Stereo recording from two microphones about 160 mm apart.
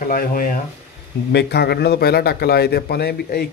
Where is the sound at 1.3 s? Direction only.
90° left.